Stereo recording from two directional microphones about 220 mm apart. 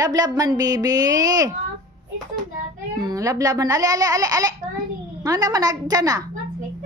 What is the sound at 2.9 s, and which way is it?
Speech, 15° right (ahead or behind).